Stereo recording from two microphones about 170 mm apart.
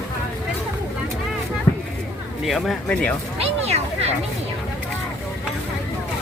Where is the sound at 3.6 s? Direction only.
40° right (ahead or behind).